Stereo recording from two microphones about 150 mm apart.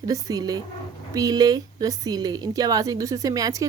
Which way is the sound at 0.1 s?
25° right (ahead or behind).